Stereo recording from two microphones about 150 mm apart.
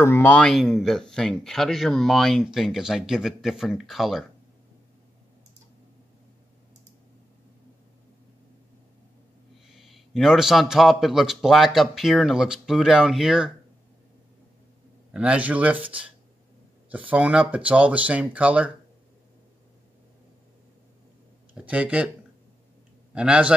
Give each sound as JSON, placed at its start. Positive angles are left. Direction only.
{"t": 0.0, "sound": "speech", "side_deg": 15}
{"t": 9.8, "sound": "speech", "side_deg": 0}
{"t": 15.1, "sound": "speech", "side_deg": -10}
{"t": 21.5, "sound": "speech", "side_deg": -10}
{"t": 23.1, "sound": "speech", "side_deg": -5}